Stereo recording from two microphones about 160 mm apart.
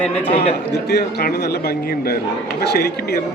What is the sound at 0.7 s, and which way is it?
A man's voice, 90° left.